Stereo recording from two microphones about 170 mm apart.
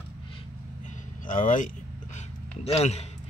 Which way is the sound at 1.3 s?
50° left (ahead or behind).